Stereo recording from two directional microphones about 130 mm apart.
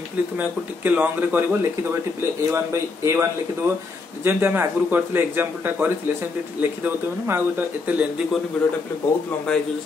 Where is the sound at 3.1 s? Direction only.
20° right (ahead or behind).